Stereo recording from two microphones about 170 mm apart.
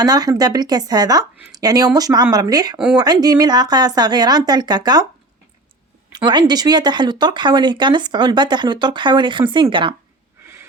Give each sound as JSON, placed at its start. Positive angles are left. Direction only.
{"t": 0.0, "sound": "speech", "side_deg": -20}
{"t": 6.1, "sound": "speech", "side_deg": -25}
{"t": 10.4, "sound": "a sound", "side_deg": -15}